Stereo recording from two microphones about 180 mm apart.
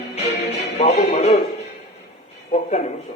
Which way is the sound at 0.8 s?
35° left (ahead or behind).